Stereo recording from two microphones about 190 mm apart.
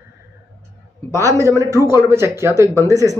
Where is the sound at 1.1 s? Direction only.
15° right (ahead or behind).